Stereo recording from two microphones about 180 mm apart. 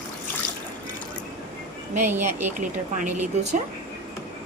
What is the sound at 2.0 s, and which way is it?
Speech, 10° right (ahead or behind).